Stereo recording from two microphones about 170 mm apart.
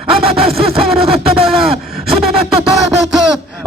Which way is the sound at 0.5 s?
Centre (ahead or behind).